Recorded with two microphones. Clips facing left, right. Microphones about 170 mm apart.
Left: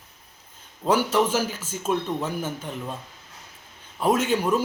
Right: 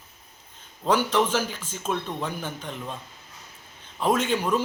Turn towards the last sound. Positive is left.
turn(degrees=10)  # may be behind; listen again after turning